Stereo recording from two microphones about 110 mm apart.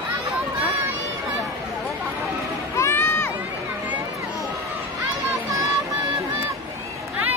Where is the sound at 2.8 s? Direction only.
20° left (ahead or behind).